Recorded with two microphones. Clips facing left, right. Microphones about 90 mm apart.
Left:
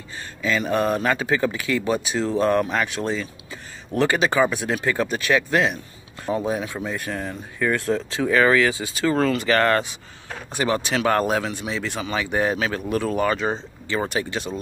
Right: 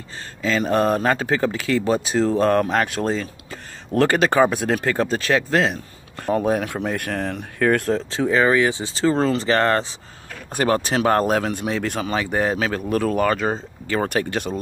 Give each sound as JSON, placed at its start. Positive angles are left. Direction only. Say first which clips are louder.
{"t": 0.4, "sound": "speech", "louder": "right 2 dB", "side_deg": -40}
{"t": 6.2, "sound": "speech", "louder": "right 4 dB", "side_deg": -55}
{"t": 7.8, "sound": "speech", "louder": "right 2 dB", "side_deg": -35}
{"t": 10.5, "sound": "speech", "louder": "right 3 dB", "side_deg": -45}